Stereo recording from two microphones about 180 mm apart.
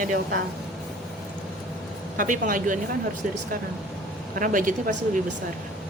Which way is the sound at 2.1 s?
45° right (ahead or behind).